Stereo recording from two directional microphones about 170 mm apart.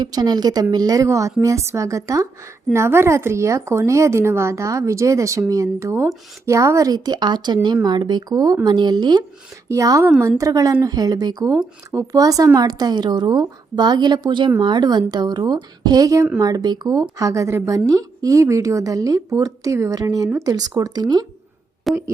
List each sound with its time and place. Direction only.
0.0 s a woman's voice: 25° right (ahead or behind)
21.9 s a woman's voice: centre (ahead or behind)